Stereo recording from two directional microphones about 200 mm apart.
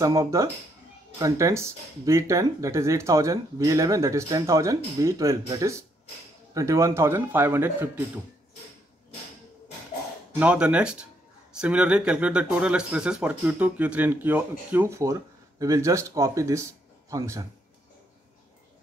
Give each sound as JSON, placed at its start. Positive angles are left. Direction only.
{"t": 0.0, "sound": "speech", "side_deg": -15}
{"t": 10.4, "sound": "speech", "side_deg": -5}